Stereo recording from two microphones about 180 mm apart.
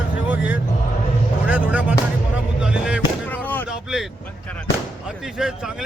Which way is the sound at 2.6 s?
5° right (ahead or behind).